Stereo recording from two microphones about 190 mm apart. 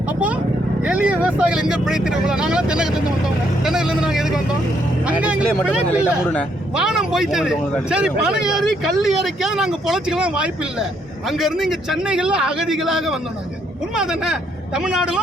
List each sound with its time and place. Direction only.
0.8 s speech: 5° right (ahead or behind)